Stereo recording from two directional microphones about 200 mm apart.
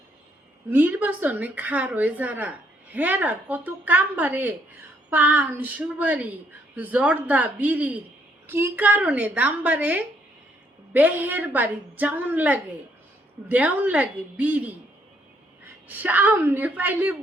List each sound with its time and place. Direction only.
0.7 s a woman's voice: 10° right (ahead or behind)
15.9 s a woman's voice: 10° right (ahead or behind)